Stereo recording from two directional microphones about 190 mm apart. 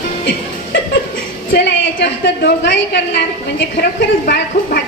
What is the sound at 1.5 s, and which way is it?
A woman's voice, 60° left (ahead or behind).